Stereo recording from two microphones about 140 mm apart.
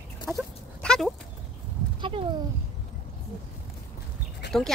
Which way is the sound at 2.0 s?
35° right (ahead or behind).